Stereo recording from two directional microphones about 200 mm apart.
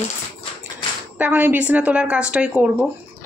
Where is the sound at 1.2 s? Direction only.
10° right (ahead or behind).